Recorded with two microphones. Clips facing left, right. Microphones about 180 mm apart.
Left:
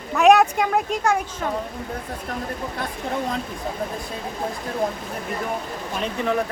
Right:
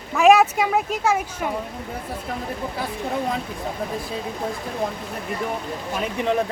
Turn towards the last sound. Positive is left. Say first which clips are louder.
# right 1 dB
turn(degrees=-15)  # may be behind; listen again after turning